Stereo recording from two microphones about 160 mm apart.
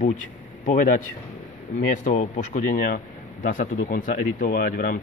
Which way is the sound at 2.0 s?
50° left (ahead or behind).